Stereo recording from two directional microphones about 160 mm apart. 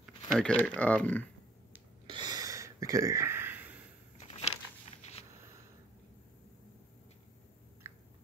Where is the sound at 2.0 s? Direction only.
30° right (ahead or behind); by 3.7 s 15° right (ahead or behind).